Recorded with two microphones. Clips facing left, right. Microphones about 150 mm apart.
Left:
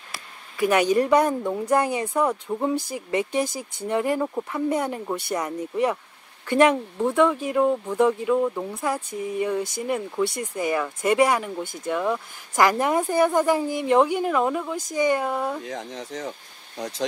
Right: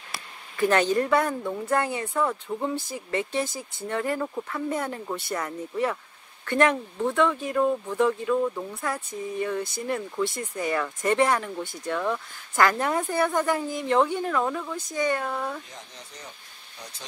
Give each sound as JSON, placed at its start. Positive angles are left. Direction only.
{"t": 0.6, "sound": "speech", "side_deg": 10}
{"t": 15.6, "sound": "speech", "side_deg": 90}